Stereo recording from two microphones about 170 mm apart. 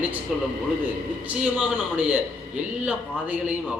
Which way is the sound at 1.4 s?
5° right (ahead or behind).